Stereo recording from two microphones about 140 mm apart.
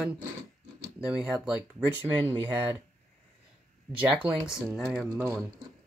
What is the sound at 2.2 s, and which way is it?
Speech, 30° right (ahead or behind).